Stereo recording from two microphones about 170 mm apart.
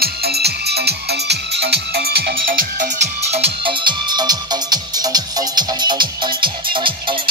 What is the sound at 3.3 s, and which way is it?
Music, 35° right (ahead or behind).